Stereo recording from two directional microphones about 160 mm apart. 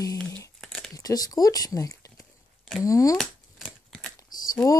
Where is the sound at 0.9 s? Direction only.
25° left (ahead or behind).